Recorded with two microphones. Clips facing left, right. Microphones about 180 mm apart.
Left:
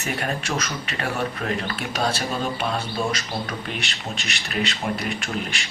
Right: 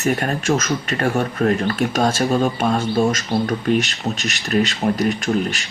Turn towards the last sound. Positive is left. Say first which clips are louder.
# right 8 dB
turn(degrees=-40)  # may be behind; listen again after turning